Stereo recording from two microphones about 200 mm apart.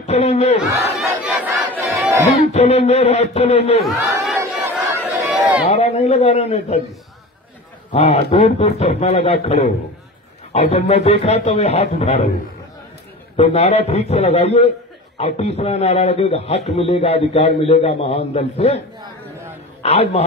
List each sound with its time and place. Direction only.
0.0 s a man's voice: 30° left (ahead or behind)
0.6 s battle cry: 5° right (ahead or behind)
2.5 s a man's voice: 35° left (ahead or behind)
3.8 s battle cry: centre (ahead or behind)
5.0 s a sound: 10° right (ahead or behind)
5.7 s a man's voice: 35° left (ahead or behind)
7.9 s a man's voice: 30° left (ahead or behind)
13.4 s a man's voice: 30° left (ahead or behind)
19.8 s a man's voice: 30° left (ahead or behind)